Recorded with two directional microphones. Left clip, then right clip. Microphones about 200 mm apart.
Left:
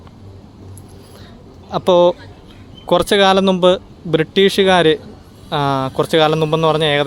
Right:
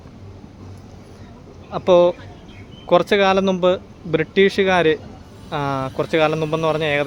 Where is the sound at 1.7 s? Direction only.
30° left (ahead or behind).